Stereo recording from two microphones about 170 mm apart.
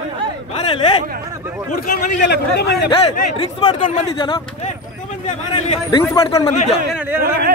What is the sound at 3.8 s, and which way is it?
Speech, 45° left (ahead or behind).